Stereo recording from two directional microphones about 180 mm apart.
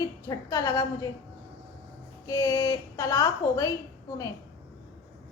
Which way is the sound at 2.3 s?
15° left (ahead or behind).